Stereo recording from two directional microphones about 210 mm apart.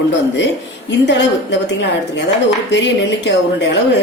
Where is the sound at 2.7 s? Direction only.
55° left (ahead or behind).